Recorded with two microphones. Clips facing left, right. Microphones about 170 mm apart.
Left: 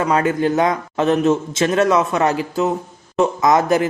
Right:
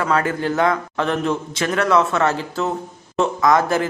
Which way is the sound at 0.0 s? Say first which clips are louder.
Left 3 dB; 20° left (ahead or behind).